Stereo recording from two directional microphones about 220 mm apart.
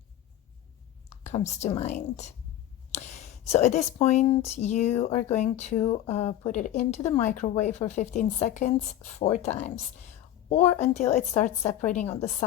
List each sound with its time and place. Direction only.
1.2 s speech: 30° left (ahead or behind)